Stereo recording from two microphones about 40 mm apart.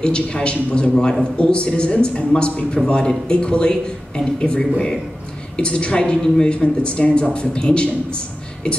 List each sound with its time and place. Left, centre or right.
0.0 s a man's voice: left